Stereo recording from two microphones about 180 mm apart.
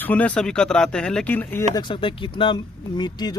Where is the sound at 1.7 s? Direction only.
25° left (ahead or behind).